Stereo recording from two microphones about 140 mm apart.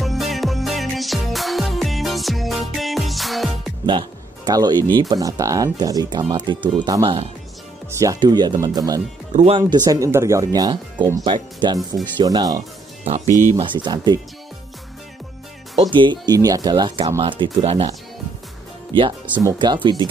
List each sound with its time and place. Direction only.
0.0 s music: centre (ahead or behind)
4.5 s speech: 30° right (ahead or behind)
13.0 s speech: 50° right (ahead or behind)
13.3 s speech: 20° left (ahead or behind)
13.6 s speech: 35° right (ahead or behind)
15.9 s speech: 35° right (ahead or behind)
19.6 s speech: 35° right (ahead or behind)